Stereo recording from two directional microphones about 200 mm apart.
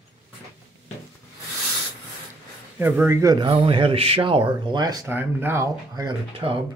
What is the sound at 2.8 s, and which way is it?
Speech, 10° right (ahead or behind).